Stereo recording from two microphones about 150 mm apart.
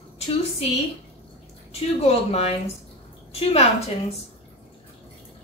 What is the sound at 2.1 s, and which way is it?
A woman's voice, 40° left (ahead or behind).